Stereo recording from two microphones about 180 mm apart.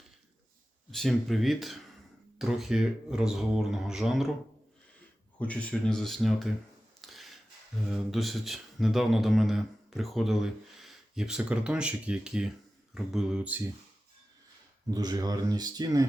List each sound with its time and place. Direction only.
0.9 s speech: centre (ahead or behind)
5.4 s speech: 5° left (ahead or behind)
7.0 s a sound: centre (ahead or behind)
7.9 s speech: centre (ahead or behind)
14.8 s speech: 20° right (ahead or behind)